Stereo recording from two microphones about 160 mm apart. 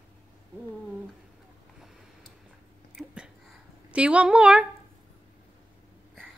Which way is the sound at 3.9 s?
10° right (ahead or behind).